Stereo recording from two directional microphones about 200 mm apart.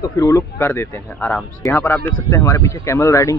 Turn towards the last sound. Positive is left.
turn(degrees=15)  # may be behind; listen again after turning